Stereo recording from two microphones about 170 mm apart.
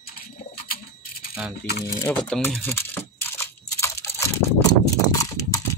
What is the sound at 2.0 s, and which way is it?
Crumpling, 10° left (ahead or behind).